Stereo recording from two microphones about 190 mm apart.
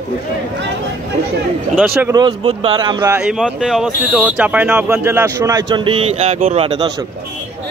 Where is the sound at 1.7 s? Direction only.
5° right (ahead or behind).